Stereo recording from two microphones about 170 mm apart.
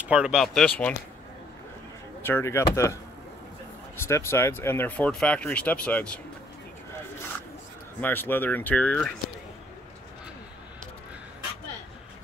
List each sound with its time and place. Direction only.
0.0 s speech: 5° right (ahead or behind)
2.2 s speech: 15° left (ahead or behind)
8.0 s speech: 10° left (ahead or behind)